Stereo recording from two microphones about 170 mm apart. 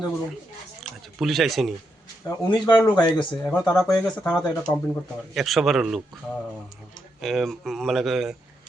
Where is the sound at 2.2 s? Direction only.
25° left (ahead or behind).